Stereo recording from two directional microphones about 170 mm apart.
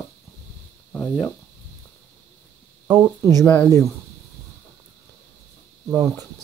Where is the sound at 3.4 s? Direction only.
10° left (ahead or behind).